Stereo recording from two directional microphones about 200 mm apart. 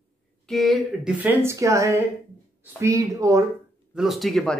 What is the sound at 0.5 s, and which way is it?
Speech, centre (ahead or behind).